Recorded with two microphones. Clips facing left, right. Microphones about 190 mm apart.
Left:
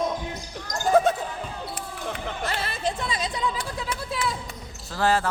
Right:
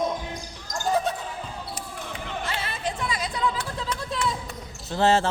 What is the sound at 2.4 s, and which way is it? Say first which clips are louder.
Music: left 4 dB; 35° left (ahead or behind).